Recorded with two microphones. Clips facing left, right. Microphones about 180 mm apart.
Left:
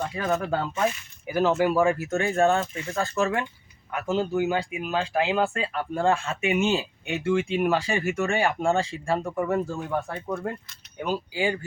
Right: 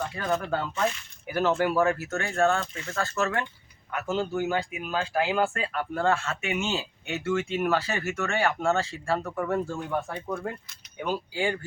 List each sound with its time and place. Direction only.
0.1 s speech: 15° left (ahead or behind)